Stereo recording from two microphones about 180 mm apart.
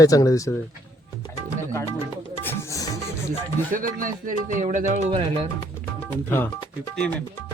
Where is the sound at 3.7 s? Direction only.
50° right (ahead or behind).